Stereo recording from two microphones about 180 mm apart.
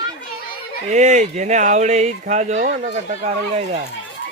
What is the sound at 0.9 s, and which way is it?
Speech, 40° right (ahead or behind).